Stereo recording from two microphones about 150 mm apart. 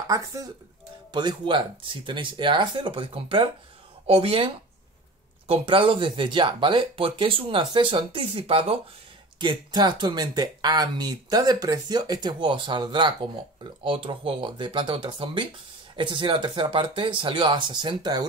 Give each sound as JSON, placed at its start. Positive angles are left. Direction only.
{"t": 0.1, "sound": "speech", "side_deg": -20}
{"t": 5.5, "sound": "speech", "side_deg": -35}